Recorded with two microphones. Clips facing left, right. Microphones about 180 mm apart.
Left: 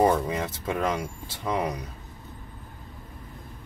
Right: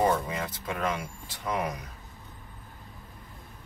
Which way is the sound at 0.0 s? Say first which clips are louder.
Left 4 dB; 25° left (ahead or behind).